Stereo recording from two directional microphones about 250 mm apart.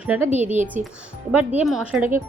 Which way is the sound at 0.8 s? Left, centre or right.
Right.